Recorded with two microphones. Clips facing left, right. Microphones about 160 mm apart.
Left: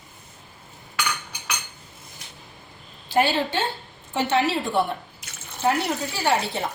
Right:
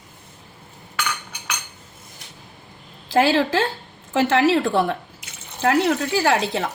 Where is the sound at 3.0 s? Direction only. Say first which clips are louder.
Right 4 dB; 90° right.